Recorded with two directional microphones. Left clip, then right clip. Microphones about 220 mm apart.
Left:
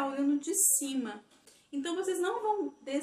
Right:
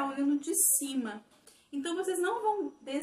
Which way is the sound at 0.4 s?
5° right (ahead or behind).